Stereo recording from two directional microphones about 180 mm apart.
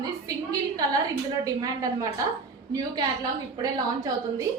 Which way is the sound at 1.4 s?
20° right (ahead or behind).